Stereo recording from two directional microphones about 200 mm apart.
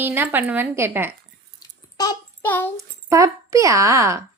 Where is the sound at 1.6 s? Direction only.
20° left (ahead or behind).